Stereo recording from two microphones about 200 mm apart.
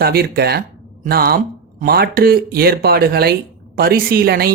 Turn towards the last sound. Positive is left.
turn(degrees=-50)  # may be behind; listen again after turning